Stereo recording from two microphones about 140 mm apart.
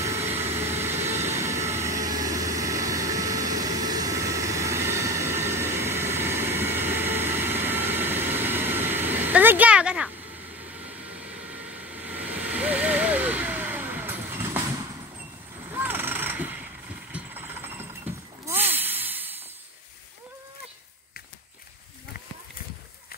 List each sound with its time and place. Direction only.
0.0 s vehicle: 20° right (ahead or behind)